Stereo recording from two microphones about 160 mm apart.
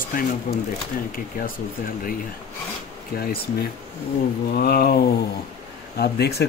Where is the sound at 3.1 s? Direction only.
65° left (ahead or behind).